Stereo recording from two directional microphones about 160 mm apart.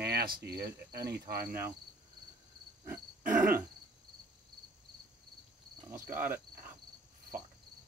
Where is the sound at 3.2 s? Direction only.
55° right (ahead or behind).